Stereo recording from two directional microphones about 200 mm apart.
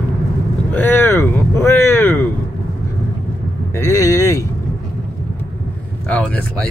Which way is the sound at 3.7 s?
15° left (ahead or behind).